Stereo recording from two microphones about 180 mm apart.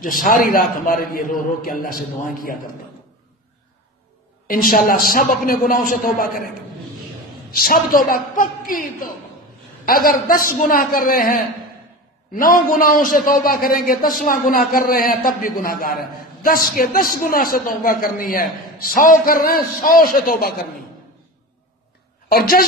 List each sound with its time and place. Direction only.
0.0 s a man's voice: 50° left (ahead or behind)
4.5 s a man's voice: 55° left (ahead or behind)
7.5 s a man's voice: 55° left (ahead or behind)
22.3 s a woman's voice: 55° left (ahead or behind)